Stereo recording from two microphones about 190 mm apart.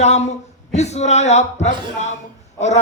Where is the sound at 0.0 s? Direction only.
35° left (ahead or behind).